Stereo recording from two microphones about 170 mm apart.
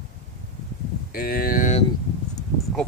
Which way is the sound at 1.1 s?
60° left (ahead or behind).